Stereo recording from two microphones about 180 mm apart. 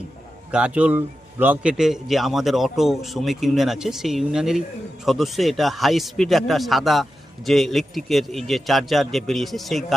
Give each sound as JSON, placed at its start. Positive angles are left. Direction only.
{"t": 0.5, "sound": "speech", "side_deg": -5}